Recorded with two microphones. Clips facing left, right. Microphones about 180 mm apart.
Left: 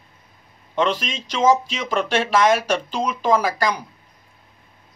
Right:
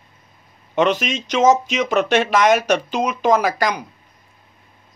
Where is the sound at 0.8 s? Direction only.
75° right (ahead or behind).